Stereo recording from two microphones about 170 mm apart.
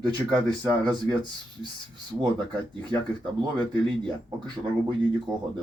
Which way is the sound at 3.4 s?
25° right (ahead or behind).